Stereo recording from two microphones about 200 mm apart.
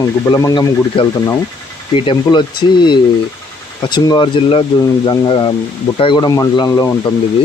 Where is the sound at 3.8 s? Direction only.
20° left (ahead or behind).